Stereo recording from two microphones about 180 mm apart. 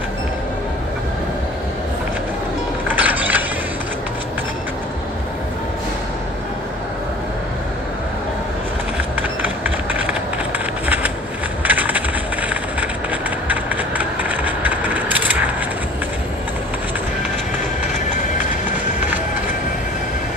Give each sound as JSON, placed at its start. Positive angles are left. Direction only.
{"t": 2.9, "sound": "music", "side_deg": -10}
{"t": 11.6, "sound": "a sound", "side_deg": -10}
{"t": 13.5, "sound": "vehicle", "side_deg": -10}
{"t": 17.9, "sound": "train", "side_deg": 40}